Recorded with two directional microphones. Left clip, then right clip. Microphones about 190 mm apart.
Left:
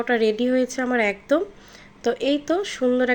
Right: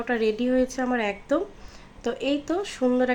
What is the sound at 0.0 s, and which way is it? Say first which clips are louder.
A woman's voice: left 4 dB; 15° left (ahead or behind).